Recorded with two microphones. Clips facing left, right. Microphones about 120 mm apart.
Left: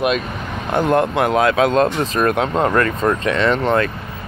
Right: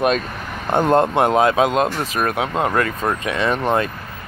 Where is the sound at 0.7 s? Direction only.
25° right (ahead or behind).